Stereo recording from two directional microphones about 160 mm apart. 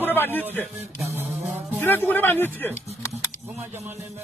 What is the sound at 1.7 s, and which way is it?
Speech, 10° left (ahead or behind).